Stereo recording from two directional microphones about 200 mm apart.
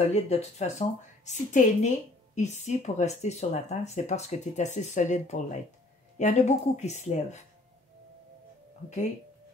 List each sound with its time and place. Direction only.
0.0 s speech: 30° left (ahead or behind)